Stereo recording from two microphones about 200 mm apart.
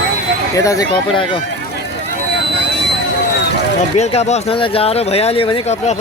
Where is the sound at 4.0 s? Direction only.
35° left (ahead or behind).